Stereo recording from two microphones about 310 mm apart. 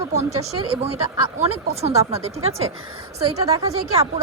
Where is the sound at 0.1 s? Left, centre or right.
Right.